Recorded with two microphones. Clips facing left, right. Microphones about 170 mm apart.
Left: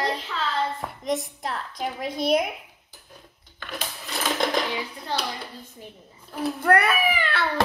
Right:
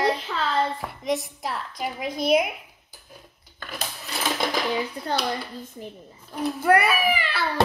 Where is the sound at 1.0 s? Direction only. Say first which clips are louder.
Right 1 dB; 5° right (ahead or behind).